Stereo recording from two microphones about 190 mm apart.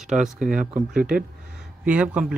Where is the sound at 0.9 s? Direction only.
5° right (ahead or behind).